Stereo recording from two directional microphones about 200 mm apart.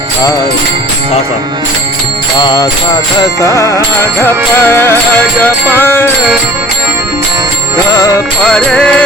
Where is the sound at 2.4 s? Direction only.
20° left (ahead or behind).